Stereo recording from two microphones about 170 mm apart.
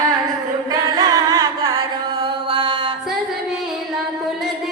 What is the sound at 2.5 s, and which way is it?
Music, 30° right (ahead or behind).